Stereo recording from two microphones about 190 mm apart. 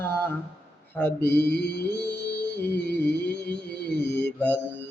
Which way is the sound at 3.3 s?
60° left (ahead or behind).